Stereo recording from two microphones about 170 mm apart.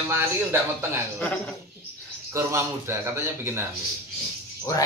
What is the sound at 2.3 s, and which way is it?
A man's voice, 15° right (ahead or behind).